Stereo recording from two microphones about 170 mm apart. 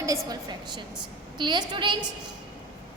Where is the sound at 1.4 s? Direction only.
25° right (ahead or behind).